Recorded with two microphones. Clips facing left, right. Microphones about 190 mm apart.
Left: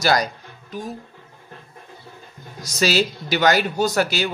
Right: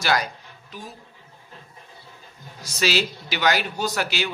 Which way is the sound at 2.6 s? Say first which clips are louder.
Left 4 dB; 45° left (ahead or behind).